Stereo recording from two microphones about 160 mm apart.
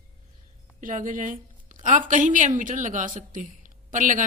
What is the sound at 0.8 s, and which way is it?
A woman's voice, 55° right (ahead or behind).